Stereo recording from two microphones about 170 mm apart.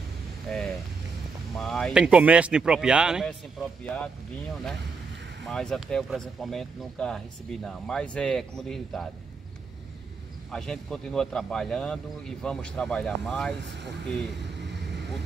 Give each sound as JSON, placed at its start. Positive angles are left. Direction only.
{"t": 0.5, "sound": "vehicle", "side_deg": 5}
{"t": 1.6, "sound": "speech", "side_deg": 5}
{"t": 3.3, "sound": "speech", "side_deg": 5}
{"t": 5.5, "sound": "speech", "side_deg": 5}
{"t": 10.5, "sound": "speech", "side_deg": 5}